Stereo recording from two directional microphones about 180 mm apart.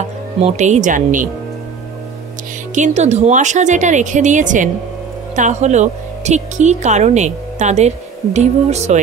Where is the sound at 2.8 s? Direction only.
40° right (ahead or behind).